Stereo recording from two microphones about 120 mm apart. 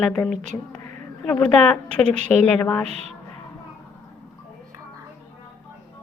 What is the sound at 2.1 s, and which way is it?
Speech, 70° right (ahead or behind).